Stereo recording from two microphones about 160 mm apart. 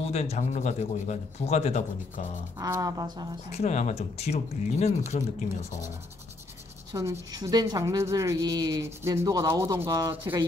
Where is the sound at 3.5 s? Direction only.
45° left (ahead or behind).